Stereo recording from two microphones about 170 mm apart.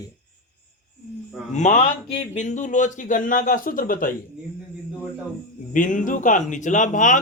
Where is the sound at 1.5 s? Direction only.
45° left (ahead or behind).